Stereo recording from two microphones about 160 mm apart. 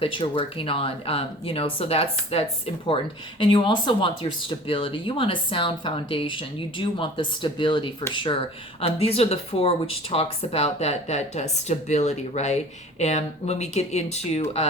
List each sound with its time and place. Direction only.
0.0 s speech: 35° left (ahead or behind)